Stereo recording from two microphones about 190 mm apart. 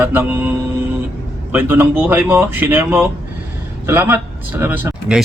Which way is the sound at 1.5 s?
10° right (ahead or behind).